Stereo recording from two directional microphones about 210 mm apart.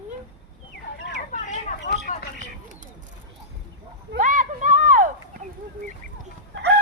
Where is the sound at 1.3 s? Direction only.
35° left (ahead or behind).